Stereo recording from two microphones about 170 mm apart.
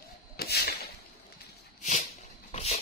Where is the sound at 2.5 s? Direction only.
40° left (ahead or behind).